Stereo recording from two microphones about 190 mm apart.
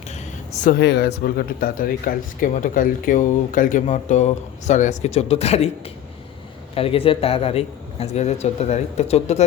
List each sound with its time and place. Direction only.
0.6 s speech: 55° left (ahead or behind); by 5.7 s 35° left (ahead or behind)
6.7 s a man's voice: 30° left (ahead or behind)